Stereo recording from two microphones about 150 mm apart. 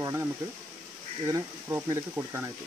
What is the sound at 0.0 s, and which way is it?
Speech, 15° right (ahead or behind).